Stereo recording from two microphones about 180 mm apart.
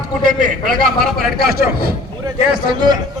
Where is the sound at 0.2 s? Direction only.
50° right (ahead or behind).